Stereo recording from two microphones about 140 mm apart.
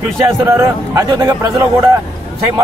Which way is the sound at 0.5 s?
20° right (ahead or behind).